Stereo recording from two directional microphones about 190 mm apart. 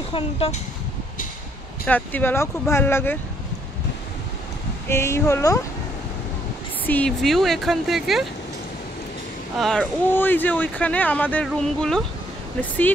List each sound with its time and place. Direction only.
0.1 s speech: 30° left (ahead or behind)
1.9 s speech: 10° left (ahead or behind)
4.8 s speech: 15° left (ahead or behind)
6.9 s speech: 5° left (ahead or behind)
9.6 s speech: 5° left (ahead or behind)